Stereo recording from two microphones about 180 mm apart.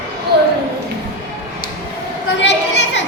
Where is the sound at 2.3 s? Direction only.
85° left.